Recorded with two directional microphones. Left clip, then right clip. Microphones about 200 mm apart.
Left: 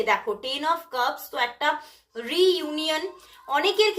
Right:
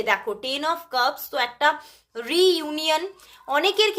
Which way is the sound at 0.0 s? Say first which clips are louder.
Even; 45° right (ahead or behind).